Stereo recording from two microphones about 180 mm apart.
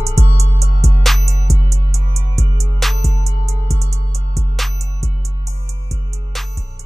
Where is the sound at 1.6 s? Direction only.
20° right (ahead or behind).